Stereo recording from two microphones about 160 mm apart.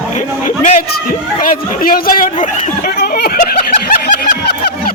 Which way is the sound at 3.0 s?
75° left (ahead or behind).